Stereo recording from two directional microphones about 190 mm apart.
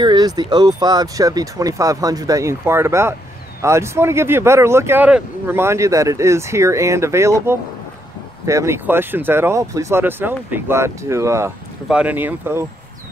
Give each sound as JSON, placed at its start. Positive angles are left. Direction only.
{"t": 0.0, "sound": "speech", "side_deg": -20}